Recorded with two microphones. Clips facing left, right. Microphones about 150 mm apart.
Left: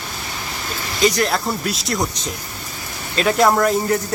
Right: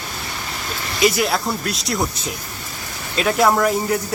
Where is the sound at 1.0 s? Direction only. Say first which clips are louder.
Even; 5° right (ahead or behind).